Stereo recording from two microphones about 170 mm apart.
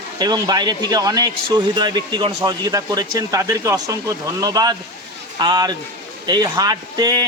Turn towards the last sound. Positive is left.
turn(degrees=-20)  # may be behind; listen again after turning